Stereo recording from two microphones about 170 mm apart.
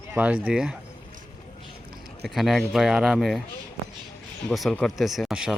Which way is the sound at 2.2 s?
Centre (ahead or behind).